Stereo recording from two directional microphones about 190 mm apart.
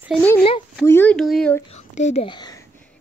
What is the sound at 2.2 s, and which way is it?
Speech, 20° left (ahead or behind).